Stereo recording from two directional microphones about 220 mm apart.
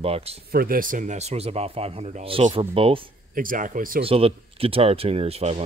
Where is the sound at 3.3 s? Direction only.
40° right (ahead or behind).